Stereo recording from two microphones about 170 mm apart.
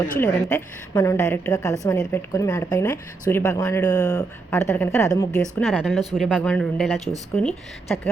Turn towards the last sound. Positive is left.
turn(degrees=5)  # may be behind; listen again after turning